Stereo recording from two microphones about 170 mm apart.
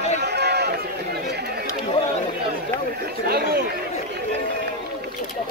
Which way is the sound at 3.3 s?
70° right (ahead or behind).